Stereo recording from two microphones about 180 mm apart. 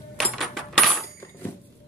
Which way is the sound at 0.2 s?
Centre (ahead or behind).